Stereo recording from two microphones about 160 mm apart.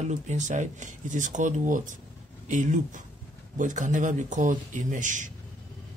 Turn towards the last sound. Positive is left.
turn(degrees=-55)  # may be behind; listen again after turning